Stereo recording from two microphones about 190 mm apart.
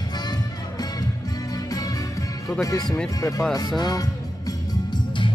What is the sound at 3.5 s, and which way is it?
Music, 20° left (ahead or behind).